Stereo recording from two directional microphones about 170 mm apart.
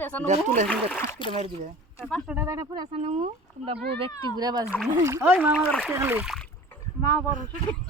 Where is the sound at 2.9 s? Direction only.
40° right (ahead or behind).